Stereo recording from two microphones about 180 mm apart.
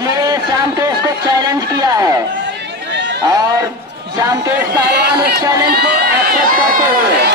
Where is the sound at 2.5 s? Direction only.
75° right (ahead or behind).